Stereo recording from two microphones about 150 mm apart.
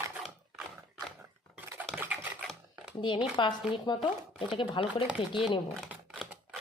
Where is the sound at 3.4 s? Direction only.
30° left (ahead or behind).